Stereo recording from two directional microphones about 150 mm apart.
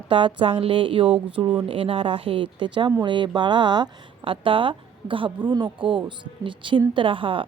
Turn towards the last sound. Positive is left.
turn(degrees=-35)  # may be behind; listen again after turning